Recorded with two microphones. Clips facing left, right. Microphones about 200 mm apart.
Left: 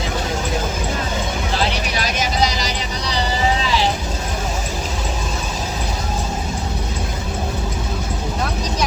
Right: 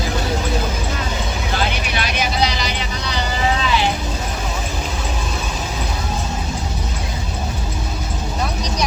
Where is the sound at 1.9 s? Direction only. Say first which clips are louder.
Right 1 dB; 40° left (ahead or behind).